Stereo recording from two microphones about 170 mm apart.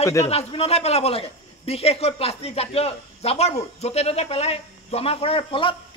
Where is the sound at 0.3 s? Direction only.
35° left (ahead or behind).